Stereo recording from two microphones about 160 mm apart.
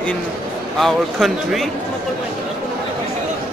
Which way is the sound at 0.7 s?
Centre (ahead or behind).